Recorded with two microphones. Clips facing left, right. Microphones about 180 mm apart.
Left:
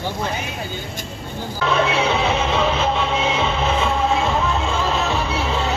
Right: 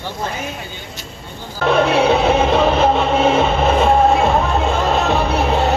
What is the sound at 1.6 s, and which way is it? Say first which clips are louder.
Music: right 5 dB; 55° right (ahead or behind).